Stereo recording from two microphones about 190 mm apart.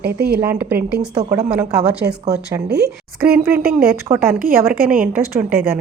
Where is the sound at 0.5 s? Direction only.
10° right (ahead or behind).